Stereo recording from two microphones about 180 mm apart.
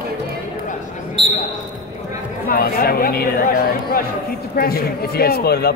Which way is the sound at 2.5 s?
55° left (ahead or behind).